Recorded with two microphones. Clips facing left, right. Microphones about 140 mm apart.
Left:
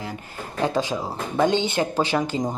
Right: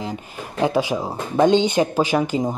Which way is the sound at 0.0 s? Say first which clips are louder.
Right 4 dB; 15° right (ahead or behind).